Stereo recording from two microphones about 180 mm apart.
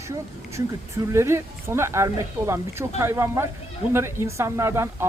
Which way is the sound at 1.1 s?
15° right (ahead or behind).